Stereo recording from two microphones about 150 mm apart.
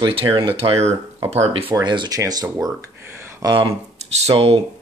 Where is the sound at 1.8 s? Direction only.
30° right (ahead or behind).